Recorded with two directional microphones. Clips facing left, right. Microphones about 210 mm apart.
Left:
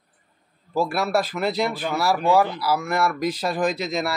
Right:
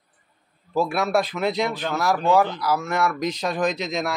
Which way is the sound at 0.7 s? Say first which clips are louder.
Right 1 dB; 5° left (ahead or behind).